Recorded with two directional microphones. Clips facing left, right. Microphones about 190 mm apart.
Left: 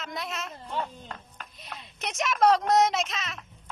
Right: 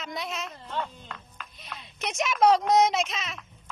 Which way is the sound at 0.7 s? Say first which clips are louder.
Even; 40° left (ahead or behind).